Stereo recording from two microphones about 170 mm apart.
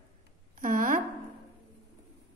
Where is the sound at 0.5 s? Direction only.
55° right (ahead or behind).